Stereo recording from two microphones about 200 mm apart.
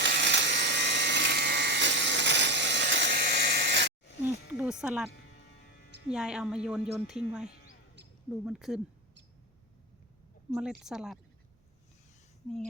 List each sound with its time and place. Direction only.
0.0 s electric shaver: 60° right (ahead or behind)
4.0 s a sound: 60° left (ahead or behind)
4.5 s a sound: 5° right (ahead or behind)
5.1 s hum: 50° left (ahead or behind)
6.1 s speech: 5° right (ahead or behind)
10.5 s speech: 5° right (ahead or behind)